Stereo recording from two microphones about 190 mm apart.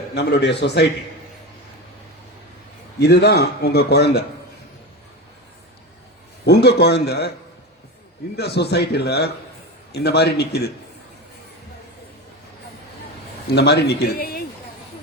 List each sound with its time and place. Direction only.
0.1 s a man's voice: 65° left (ahead or behind)
3.0 s a man's voice: 60° left (ahead or behind)
6.4 s a man's voice: 60° left (ahead or behind)
8.4 s a man's voice: 60° left (ahead or behind)
13.6 s a man's voice: 60° left (ahead or behind)